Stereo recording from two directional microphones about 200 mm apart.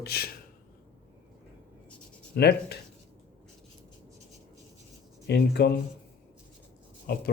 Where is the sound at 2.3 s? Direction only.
55° left (ahead or behind).